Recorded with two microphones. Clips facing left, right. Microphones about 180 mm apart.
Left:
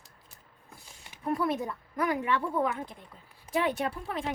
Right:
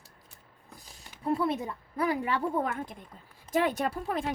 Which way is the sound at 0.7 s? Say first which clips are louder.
Right 1 dB; 40° right (ahead or behind).